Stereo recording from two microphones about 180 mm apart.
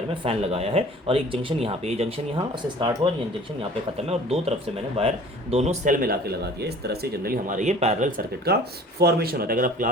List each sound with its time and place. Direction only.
0.2 s speech: 35° right (ahead or behind)
3.6 s speech: 35° right (ahead or behind)